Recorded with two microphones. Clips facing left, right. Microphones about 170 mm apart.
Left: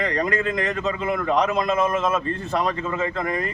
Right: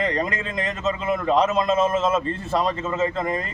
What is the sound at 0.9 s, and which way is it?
Speech, 20° right (ahead or behind).